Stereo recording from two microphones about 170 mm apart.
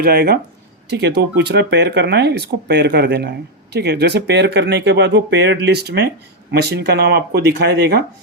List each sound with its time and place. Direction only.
0.0 s speech: 65° right (ahead or behind)
0.9 s speech: 85° right